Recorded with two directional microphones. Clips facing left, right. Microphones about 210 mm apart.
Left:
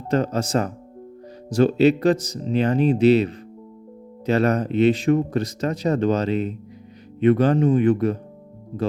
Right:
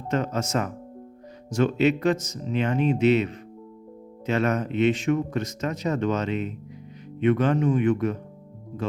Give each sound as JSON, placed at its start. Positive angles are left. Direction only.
{"t": 0.1, "sound": "speech", "side_deg": 35}